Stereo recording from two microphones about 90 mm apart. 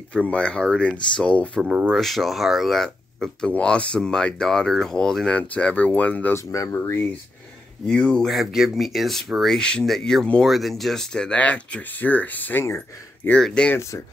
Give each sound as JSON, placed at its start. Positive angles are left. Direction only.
{"t": 0.1, "sound": "speech", "side_deg": 15}
{"t": 1.6, "sound": "speech", "side_deg": -10}
{"t": 2.0, "sound": "speech", "side_deg": 0}
{"t": 6.3, "sound": "speech", "side_deg": 35}
{"t": 7.8, "sound": "speech", "side_deg": 10}
{"t": 13.4, "sound": "speech", "side_deg": 10}
{"t": 13.7, "sound": "speech", "side_deg": 35}